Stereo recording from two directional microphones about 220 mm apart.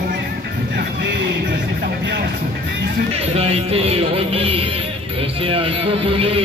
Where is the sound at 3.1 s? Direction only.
25° right (ahead or behind).